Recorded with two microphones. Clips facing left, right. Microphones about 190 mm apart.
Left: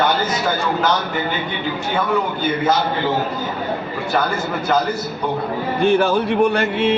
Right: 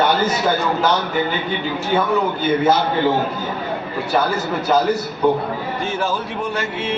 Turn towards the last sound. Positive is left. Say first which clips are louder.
# left 7 dB
turn(degrees=65)  # may be behind; listen again after turning